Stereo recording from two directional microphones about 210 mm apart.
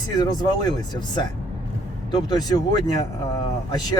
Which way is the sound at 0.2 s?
20° left (ahead or behind).